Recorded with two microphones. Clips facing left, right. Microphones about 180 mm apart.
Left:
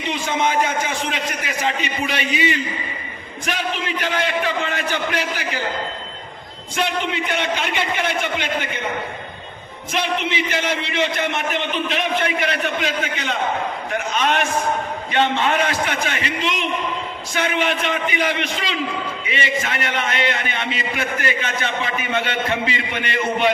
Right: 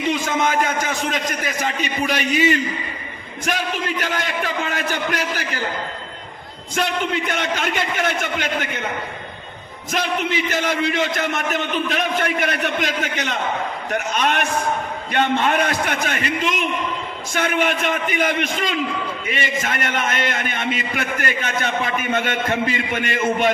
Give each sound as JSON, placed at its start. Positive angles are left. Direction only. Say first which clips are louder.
{"t": 0.1, "sound": "a man's voice", "louder": "even", "side_deg": -45}
{"t": 6.7, "sound": "a man's voice", "louder": "right 1 dB", "side_deg": -45}
{"t": 9.9, "sound": "a man's voice", "louder": "right 1 dB", "side_deg": -45}